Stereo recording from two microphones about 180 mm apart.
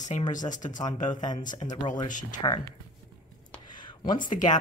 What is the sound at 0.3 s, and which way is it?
Speech, 45° left (ahead or behind).